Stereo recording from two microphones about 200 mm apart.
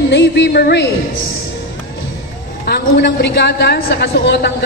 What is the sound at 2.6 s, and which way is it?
A woman's voice, 60° left (ahead or behind).